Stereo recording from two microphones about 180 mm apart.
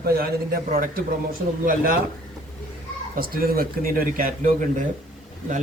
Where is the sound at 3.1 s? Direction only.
55° right (ahead or behind).